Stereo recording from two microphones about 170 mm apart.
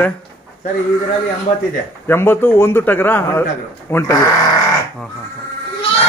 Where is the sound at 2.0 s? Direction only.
15° left (ahead or behind).